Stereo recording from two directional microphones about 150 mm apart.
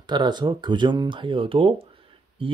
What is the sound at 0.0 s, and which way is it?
Speech, 30° right (ahead or behind).